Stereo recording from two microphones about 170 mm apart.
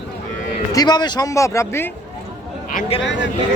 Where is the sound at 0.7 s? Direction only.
25° left (ahead or behind).